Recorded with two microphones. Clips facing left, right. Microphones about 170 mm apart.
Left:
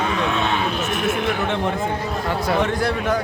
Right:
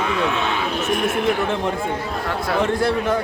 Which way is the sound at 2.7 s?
30° right (ahead or behind).